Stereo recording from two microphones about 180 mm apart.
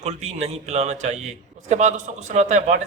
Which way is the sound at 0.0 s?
40° right (ahead or behind).